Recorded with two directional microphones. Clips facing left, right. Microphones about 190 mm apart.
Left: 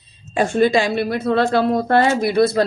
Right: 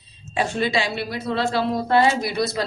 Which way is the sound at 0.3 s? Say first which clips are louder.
Left 7 dB; 50° left (ahead or behind).